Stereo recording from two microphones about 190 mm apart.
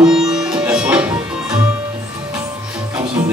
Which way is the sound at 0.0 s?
5° right (ahead or behind).